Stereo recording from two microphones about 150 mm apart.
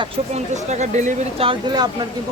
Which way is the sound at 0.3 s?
50° right (ahead or behind).